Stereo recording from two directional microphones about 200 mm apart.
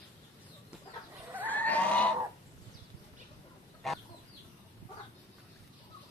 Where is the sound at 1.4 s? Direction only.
10° left (ahead or behind).